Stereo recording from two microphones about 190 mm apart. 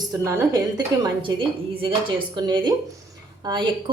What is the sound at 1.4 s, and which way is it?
Speech, 25° right (ahead or behind).